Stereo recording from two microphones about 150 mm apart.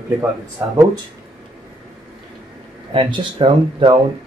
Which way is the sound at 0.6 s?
15° right (ahead or behind).